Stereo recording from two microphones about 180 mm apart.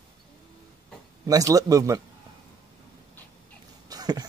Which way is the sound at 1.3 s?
20° right (ahead or behind).